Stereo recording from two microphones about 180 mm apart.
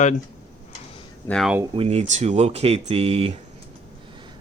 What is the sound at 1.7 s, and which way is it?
Speech, 30° right (ahead or behind).